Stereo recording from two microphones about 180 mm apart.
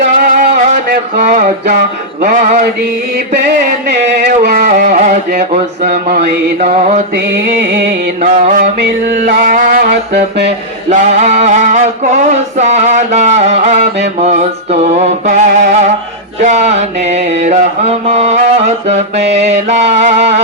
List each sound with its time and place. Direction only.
0.0 s music: 55° right (ahead or behind)
3.8 s music: 65° right (ahead or behind); by 5.1 s 45° right (ahead or behind)
5.8 s music: 55° right (ahead or behind)
6.6 s mantra: 40° right (ahead or behind)
8.2 s music: 45° right (ahead or behind); by 10.5 s 65° right (ahead or behind)
10.8 s mantra: 35° right (ahead or behind)